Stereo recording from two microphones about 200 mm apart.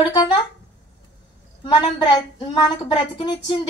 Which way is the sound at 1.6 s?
20° left (ahead or behind).